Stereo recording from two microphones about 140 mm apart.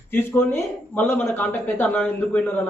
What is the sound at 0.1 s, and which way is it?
A man's voice, 15° left (ahead or behind).